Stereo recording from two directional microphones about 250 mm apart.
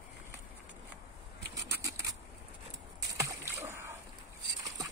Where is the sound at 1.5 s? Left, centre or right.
Centre.